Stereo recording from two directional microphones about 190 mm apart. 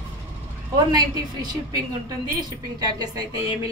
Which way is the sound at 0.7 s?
20° right (ahead or behind).